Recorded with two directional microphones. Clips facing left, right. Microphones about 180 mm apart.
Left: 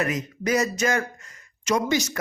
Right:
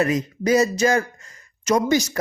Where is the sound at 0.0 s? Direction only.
30° right (ahead or behind).